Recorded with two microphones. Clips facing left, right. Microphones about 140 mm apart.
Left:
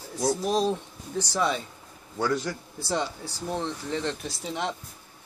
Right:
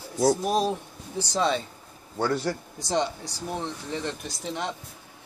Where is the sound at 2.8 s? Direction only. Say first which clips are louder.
Right 2 dB; 20° right (ahead or behind).